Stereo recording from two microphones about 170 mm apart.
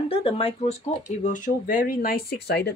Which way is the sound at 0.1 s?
30° left (ahead or behind).